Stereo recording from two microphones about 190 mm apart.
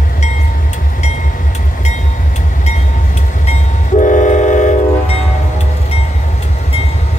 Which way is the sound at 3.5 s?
40° left (ahead or behind).